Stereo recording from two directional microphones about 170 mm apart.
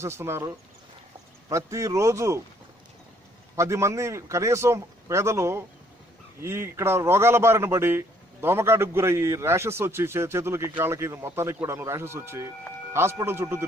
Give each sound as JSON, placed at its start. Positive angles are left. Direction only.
{"t": 0.0, "sound": "a man's voice", "side_deg": -15}
{"t": 1.5, "sound": "a man's voice", "side_deg": -20}
{"t": 3.5, "sound": "a man's voice", "side_deg": -15}